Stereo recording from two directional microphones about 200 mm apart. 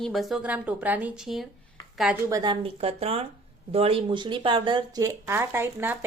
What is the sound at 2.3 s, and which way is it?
Speech, 20° right (ahead or behind).